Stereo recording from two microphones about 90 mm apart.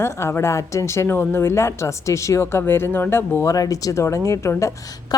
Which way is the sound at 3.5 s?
40° left (ahead or behind).